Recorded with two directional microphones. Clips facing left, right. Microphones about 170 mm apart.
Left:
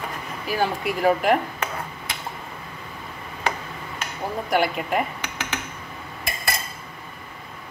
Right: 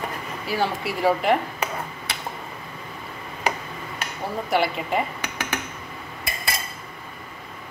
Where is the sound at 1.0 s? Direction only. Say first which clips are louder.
Left 1 dB; 5° left (ahead or behind).